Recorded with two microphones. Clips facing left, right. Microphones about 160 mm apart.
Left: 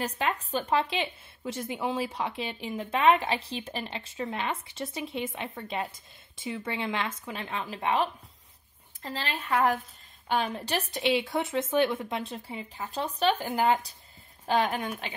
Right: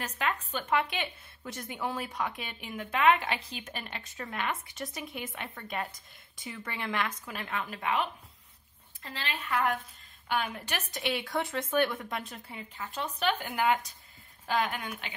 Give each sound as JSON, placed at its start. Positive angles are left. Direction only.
{"t": 0.2, "sound": "a woman's voice", "side_deg": 35}